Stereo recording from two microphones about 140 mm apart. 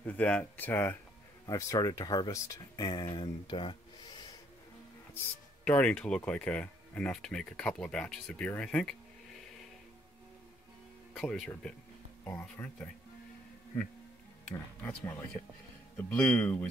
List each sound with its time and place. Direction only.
0.0 s speech: 10° left (ahead or behind)
1.4 s speech: 25° left (ahead or behind)
5.7 s speech: 10° left (ahead or behind)
11.1 s speech: 5° left (ahead or behind)
12.3 s speech: 15° left (ahead or behind)
14.8 s speech: 15° left (ahead or behind)